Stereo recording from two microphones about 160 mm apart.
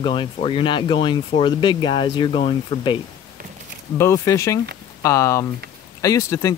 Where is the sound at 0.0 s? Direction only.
30° left (ahead or behind).